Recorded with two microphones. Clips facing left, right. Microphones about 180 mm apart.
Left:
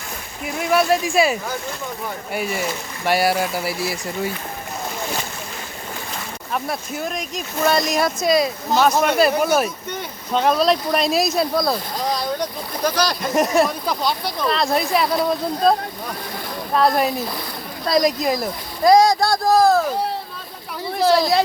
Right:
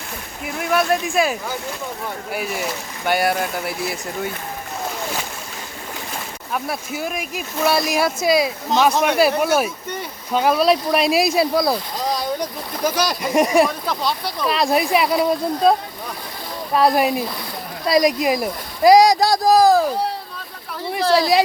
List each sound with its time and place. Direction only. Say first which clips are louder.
0.4 s speech: left 1 dB; centre (ahead or behind)
6.5 s speech: even; 5° right (ahead or behind)
12.8 s speech: even; 5° right (ahead or behind)
13.6 s speech: right 1 dB; centre (ahead or behind)
16.7 s speech: right 1 dB; 10° right (ahead or behind)
21.2 s speech: right 1 dB; 10° right (ahead or behind)